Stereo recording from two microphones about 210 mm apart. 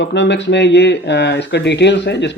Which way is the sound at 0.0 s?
55° left (ahead or behind).